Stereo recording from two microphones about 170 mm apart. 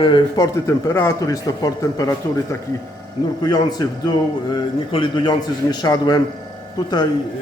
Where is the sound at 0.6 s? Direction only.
15° left (ahead or behind).